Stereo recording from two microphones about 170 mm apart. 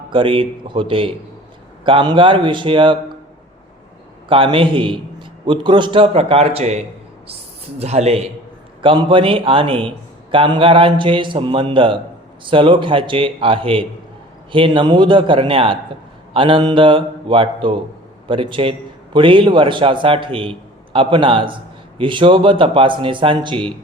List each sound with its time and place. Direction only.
0.1 s a man's voice: 30° right (ahead or behind)
4.3 s a man's voice: 30° right (ahead or behind)